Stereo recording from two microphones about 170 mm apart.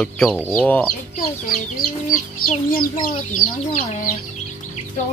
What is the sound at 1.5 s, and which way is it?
A child's voice, 60° left (ahead or behind).